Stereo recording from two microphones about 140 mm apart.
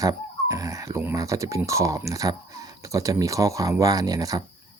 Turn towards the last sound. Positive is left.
turn(degrees=-25)  # may be behind; listen again after turning